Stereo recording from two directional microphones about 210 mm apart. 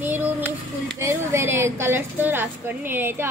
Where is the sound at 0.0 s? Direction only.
10° right (ahead or behind).